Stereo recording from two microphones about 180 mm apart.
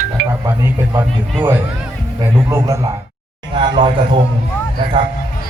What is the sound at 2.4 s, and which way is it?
Speech, 15° right (ahead or behind).